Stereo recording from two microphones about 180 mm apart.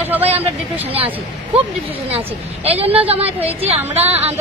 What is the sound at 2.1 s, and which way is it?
A woman's voice, 35° right (ahead or behind).